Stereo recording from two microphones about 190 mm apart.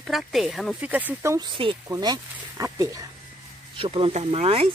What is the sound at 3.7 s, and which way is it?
Speech, 30° right (ahead or behind).